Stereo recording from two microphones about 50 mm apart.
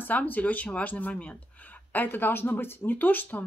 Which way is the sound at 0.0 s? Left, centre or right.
Left.